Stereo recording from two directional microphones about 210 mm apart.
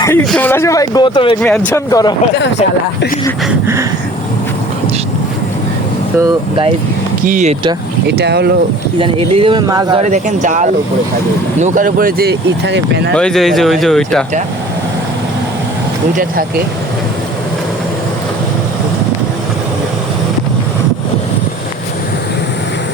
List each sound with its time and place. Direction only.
0.0 s speech: 15° left (ahead or behind)
1.4 s speech: 5° left (ahead or behind)
1.9 s speech: 15° left (ahead or behind)
7.3 s speech: 35° right (ahead or behind)
8.0 s speech: 50° right (ahead or behind)
9.0 s speech: 25° right (ahead or behind)
10.0 s speech: 35° right (ahead or behind); by 13.1 s 55° right (ahead or behind)
13.1 s speech: centre (ahead or behind)